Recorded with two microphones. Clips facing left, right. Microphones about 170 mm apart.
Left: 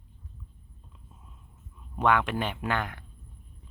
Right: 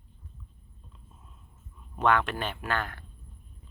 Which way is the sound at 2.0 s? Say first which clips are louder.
Left 1 dB; 10° left (ahead or behind).